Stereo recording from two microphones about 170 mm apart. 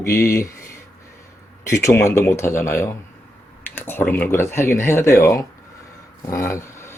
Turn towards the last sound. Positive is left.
turn(degrees=15)  # may be behind; listen again after turning